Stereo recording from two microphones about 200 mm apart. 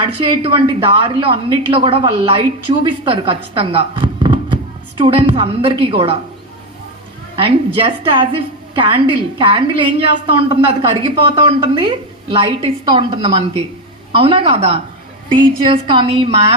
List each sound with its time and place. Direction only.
0.0 s a woman's voice: 25° right (ahead or behind)
7.4 s a woman's voice: 25° right (ahead or behind)
15.9 s a woman's voice: 25° right (ahead or behind)